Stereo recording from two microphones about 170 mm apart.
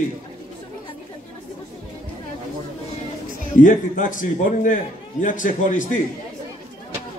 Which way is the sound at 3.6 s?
50° left (ahead or behind).